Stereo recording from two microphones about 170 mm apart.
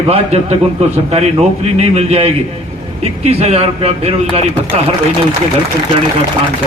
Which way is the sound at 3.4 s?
35° right (ahead or behind).